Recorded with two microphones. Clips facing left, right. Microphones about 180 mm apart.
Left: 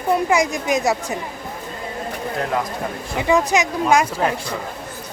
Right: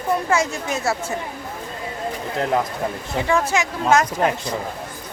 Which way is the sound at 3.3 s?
15° left (ahead or behind).